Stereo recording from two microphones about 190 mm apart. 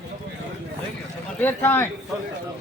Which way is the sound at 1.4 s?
10° left (ahead or behind).